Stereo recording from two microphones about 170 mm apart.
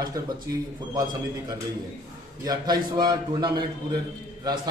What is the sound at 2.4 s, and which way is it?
A man's voice, 25° right (ahead or behind).